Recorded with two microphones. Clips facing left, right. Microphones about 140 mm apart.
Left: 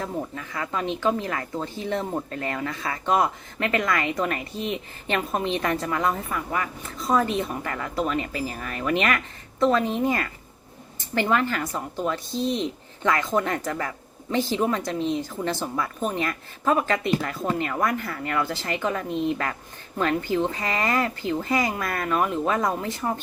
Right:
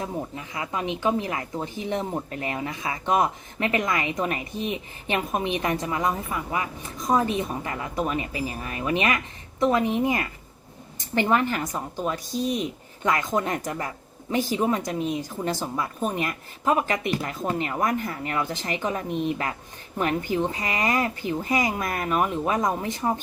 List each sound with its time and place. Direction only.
0.1 s speech: 15° right (ahead or behind)